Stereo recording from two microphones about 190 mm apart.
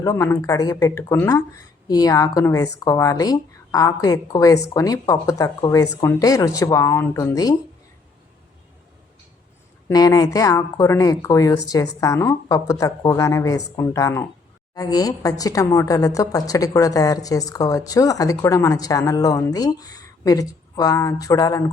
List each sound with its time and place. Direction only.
0.0 s speech: 15° left (ahead or behind)
9.9 s a woman's voice: 20° left (ahead or behind)